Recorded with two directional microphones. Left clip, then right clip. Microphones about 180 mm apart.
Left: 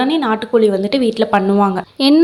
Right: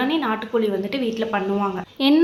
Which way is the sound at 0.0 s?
40° left (ahead or behind).